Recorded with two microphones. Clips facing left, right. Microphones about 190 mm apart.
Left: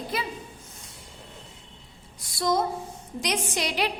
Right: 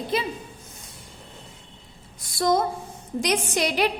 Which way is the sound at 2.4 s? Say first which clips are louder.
Right 3 dB; 50° right (ahead or behind).